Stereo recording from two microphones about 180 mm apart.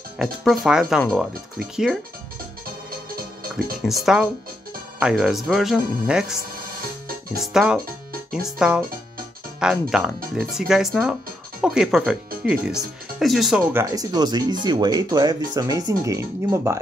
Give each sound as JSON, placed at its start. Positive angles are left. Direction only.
{"t": 0.2, "sound": "speech", "side_deg": 0}
{"t": 3.8, "sound": "speech", "side_deg": 0}
{"t": 7.5, "sound": "speech", "side_deg": -5}
{"t": 13.7, "sound": "speech", "side_deg": -20}